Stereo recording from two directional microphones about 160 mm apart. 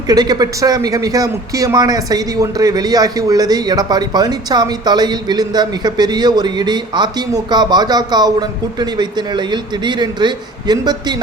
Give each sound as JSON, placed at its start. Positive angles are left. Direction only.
{"t": 0.1, "sound": "a man's voice", "side_deg": -25}